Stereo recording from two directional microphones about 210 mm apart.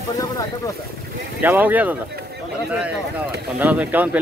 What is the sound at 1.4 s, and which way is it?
Speech, 10° right (ahead or behind).